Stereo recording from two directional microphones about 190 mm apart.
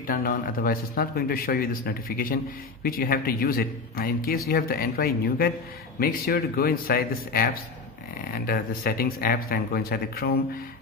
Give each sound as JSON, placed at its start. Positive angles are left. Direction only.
{"t": 0.0, "sound": "speech", "side_deg": 50}
{"t": 8.5, "sound": "speech", "side_deg": 50}